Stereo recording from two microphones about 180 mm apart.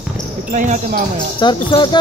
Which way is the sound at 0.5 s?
45° right (ahead or behind).